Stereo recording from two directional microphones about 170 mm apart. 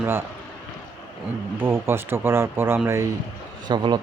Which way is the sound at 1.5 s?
15° right (ahead or behind).